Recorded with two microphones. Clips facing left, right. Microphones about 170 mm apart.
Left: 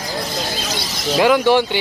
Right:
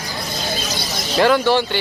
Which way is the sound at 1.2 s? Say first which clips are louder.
Left 1 dB; 10° left (ahead or behind).